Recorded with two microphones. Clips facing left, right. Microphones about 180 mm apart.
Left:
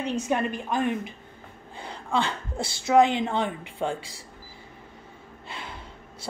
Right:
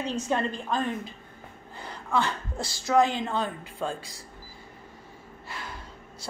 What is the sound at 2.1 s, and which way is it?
Speech, 25° left (ahead or behind).